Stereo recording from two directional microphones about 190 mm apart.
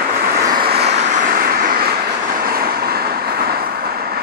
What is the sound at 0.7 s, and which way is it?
Vehicle, 60° right (ahead or behind).